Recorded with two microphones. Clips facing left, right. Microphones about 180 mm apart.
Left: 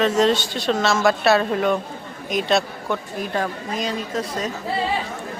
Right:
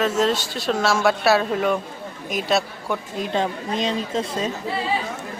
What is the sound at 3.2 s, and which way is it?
A woman's voice, 20° right (ahead or behind).